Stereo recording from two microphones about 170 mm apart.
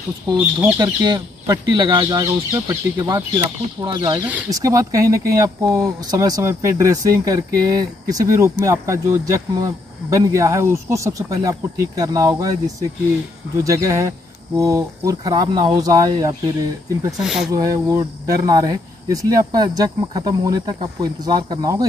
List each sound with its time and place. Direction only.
0.4 s speech: 10° right (ahead or behind)
4.2 s speech: 10° right (ahead or behind)
4.5 s speech: 20° right (ahead or behind)
17.2 s speech: centre (ahead or behind)
17.5 s speech: 20° right (ahead or behind)